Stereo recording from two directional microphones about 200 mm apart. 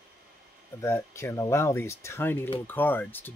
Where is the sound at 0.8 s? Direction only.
15° left (ahead or behind).